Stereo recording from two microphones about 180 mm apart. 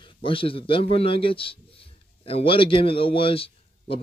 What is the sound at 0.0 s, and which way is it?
A man's voice, 30° left (ahead or behind).